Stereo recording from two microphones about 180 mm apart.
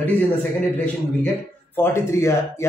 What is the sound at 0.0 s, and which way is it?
A man's voice, 10° left (ahead or behind).